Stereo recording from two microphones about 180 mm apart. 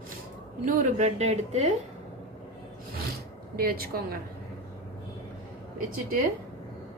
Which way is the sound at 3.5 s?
60° right (ahead or behind).